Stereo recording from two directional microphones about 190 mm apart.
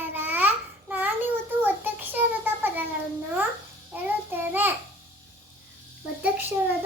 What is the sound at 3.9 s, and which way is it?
Child singing, 10° right (ahead or behind).